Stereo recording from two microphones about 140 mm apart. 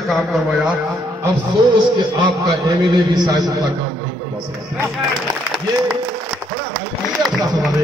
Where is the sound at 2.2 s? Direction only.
30° right (ahead or behind).